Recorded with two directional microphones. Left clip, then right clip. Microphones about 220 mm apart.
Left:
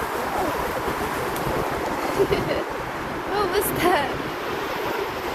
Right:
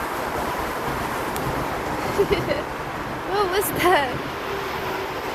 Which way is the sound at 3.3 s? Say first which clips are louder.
Right 1 dB; 15° right (ahead or behind).